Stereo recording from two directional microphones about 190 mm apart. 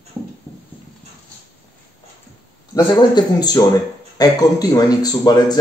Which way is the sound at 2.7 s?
20° left (ahead or behind).